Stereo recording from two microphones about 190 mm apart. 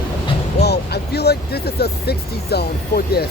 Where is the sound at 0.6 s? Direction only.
60° left (ahead or behind).